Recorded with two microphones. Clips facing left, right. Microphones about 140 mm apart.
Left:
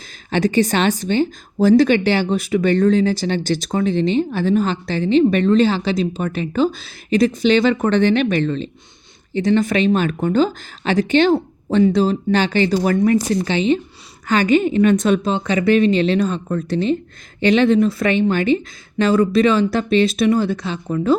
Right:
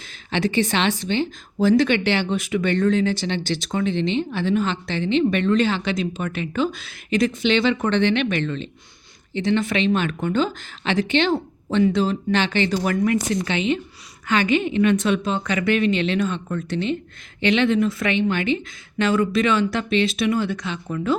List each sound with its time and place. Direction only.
0.1 s speech: 40° left (ahead or behind)